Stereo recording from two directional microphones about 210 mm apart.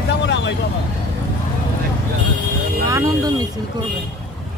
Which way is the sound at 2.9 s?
15° right (ahead or behind).